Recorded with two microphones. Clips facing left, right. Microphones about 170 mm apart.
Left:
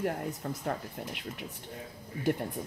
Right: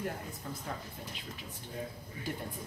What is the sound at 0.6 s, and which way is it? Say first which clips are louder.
Speech: left 7 dB; 65° left (ahead or behind).